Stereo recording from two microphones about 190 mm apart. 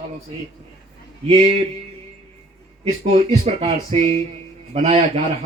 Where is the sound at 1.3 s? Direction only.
35° right (ahead or behind).